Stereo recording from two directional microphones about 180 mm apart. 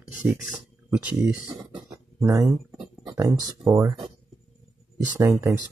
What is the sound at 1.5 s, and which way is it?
Speech, 20° right (ahead or behind).